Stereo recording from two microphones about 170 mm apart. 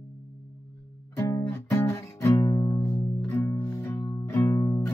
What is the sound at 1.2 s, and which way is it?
Music, 15° left (ahead or behind).